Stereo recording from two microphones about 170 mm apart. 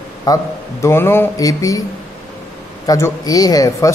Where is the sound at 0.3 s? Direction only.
20° left (ahead or behind).